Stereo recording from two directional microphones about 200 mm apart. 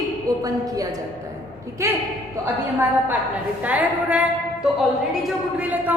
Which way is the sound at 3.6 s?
5° right (ahead or behind).